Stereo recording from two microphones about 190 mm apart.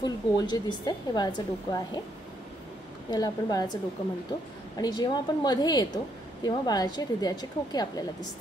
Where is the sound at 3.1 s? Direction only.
20° left (ahead or behind).